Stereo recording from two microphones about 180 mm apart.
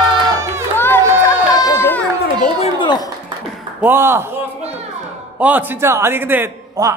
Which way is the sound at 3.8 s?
15° right (ahead or behind).